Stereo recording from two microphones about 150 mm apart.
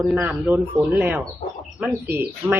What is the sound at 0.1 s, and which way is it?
A man's voice, 10° right (ahead or behind).